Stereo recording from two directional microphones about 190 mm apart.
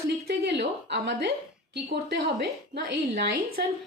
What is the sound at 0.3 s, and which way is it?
A woman's voice, 60° right (ahead or behind).